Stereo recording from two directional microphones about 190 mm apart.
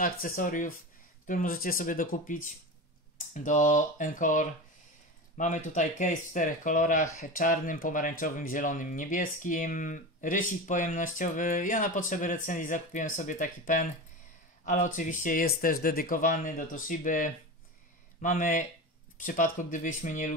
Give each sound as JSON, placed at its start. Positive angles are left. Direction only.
{"t": 0.0, "sound": "speech", "side_deg": 45}